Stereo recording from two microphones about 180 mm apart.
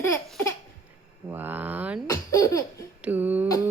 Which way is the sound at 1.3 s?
10° right (ahead or behind).